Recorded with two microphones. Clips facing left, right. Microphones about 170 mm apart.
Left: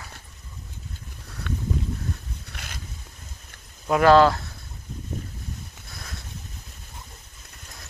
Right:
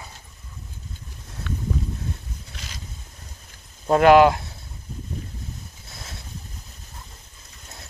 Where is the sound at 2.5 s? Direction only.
55° left (ahead or behind).